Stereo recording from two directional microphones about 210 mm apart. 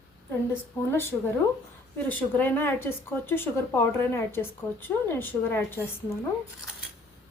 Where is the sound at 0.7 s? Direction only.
10° left (ahead or behind).